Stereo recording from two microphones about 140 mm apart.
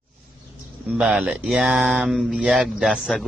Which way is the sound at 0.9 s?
10° right (ahead or behind).